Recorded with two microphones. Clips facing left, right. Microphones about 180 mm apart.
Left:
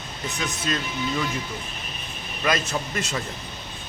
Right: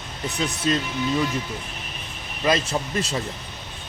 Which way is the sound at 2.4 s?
30° right (ahead or behind).